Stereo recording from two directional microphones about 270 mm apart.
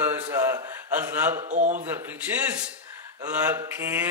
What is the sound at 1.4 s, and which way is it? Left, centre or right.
Speech, right.